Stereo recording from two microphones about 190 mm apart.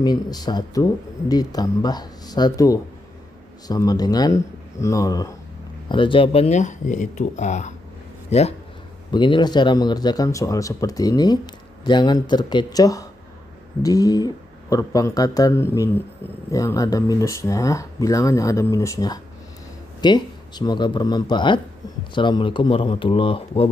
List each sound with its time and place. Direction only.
0.0 s speech: 20° left (ahead or behind)
9.1 s speech: 25° left (ahead or behind)